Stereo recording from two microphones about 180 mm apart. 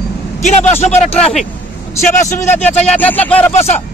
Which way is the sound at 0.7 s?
35° left (ahead or behind).